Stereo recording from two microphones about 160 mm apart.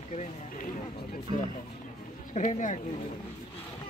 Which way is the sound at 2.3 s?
50° left (ahead or behind).